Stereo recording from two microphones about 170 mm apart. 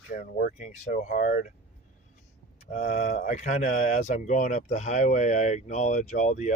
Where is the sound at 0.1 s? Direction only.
55° left (ahead or behind).